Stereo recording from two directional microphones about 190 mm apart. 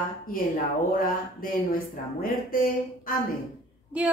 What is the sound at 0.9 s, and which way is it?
Speech, 50° left (ahead or behind).